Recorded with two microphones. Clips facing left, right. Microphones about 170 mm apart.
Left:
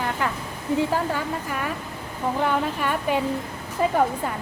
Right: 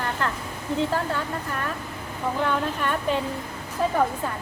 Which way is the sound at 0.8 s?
10° left (ahead or behind).